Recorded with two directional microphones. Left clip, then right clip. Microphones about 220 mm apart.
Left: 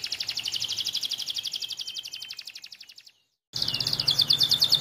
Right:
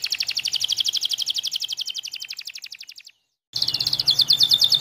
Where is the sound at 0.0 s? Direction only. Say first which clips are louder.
Right 6 dB; 25° right (ahead or behind).